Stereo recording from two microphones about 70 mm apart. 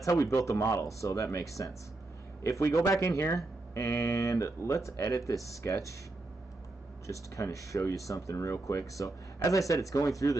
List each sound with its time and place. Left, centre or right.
0.0 s speech: left
7.1 s speech: left